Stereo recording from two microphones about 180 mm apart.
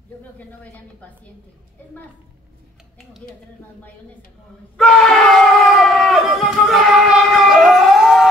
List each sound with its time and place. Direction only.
4.7 s crowd: centre (ahead or behind)